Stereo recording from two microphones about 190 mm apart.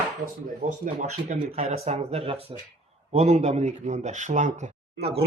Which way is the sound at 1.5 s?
35° right (ahead or behind).